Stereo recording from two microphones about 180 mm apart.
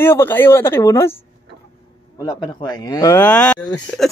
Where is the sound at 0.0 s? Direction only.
15° left (ahead or behind).